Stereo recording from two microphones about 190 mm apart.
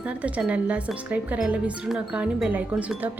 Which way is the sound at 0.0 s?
5° right (ahead or behind).